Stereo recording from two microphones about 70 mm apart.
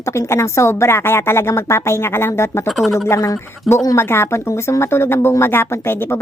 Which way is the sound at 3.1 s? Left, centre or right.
Left.